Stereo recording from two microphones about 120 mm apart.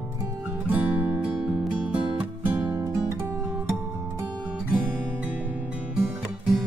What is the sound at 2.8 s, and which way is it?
Guitar, 25° right (ahead or behind).